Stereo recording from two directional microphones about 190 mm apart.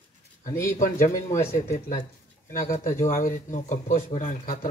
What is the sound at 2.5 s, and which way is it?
Speech, 40° left (ahead or behind).